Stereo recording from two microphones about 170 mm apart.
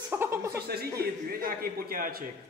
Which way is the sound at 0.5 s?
70° right (ahead or behind).